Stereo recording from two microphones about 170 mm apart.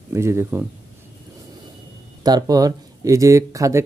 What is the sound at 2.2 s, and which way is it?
Speech, 20° right (ahead or behind).